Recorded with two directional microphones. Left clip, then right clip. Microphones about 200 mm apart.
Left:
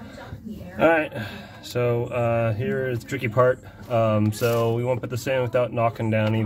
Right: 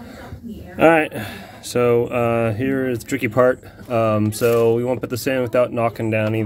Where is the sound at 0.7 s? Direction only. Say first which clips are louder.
Right 5 dB; 40° right (ahead or behind).